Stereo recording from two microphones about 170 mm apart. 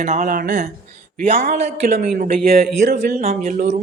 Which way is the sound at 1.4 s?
45° right (ahead or behind).